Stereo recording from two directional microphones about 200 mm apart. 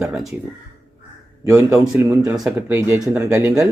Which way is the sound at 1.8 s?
5° right (ahead or behind).